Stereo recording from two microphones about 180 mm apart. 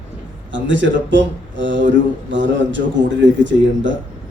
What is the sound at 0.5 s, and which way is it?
Speech, 90° right.